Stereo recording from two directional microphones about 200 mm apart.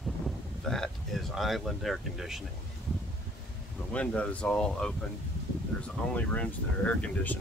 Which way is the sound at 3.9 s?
5° left (ahead or behind).